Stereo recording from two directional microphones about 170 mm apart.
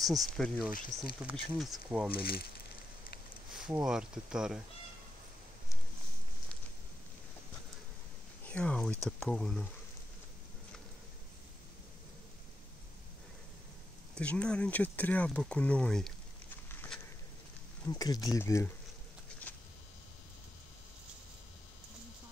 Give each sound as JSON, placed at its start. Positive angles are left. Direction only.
{"t": 0.0, "sound": "speech", "side_deg": 0}
{"t": 2.1, "sound": "speech", "side_deg": 65}
{"t": 3.5, "sound": "speech", "side_deg": -5}
{"t": 8.5, "sound": "speech", "side_deg": 5}
{"t": 14.1, "sound": "speech", "side_deg": 5}
{"t": 16.7, "sound": "a sound", "side_deg": 10}
{"t": 17.8, "sound": "speech", "side_deg": 20}
{"t": 19.5, "sound": "a sound", "side_deg": 10}